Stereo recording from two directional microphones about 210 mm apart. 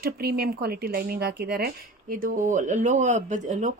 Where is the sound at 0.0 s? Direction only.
50° right (ahead or behind).